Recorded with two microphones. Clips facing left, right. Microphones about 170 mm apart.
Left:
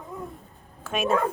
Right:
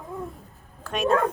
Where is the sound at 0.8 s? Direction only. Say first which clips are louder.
Right 2 dB; centre (ahead or behind).